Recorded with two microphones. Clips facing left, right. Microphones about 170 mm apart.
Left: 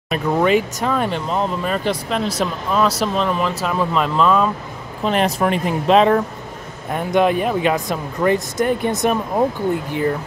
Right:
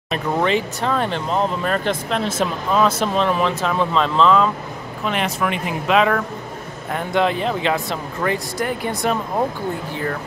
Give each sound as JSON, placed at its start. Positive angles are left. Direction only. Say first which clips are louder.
{"t": 0.1, "sound": "speech", "louder": "left 3 dB", "side_deg": 10}
{"t": 5.0, "sound": "speech", "louder": "left 4 dB", "side_deg": 35}
{"t": 6.9, "sound": "speech", "louder": "left 3 dB", "side_deg": 15}